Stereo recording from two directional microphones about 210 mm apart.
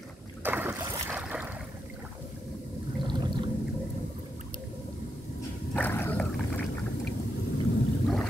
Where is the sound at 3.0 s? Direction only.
20° right (ahead or behind).